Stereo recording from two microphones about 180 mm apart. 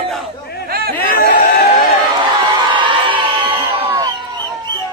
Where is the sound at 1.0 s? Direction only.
55° left (ahead or behind).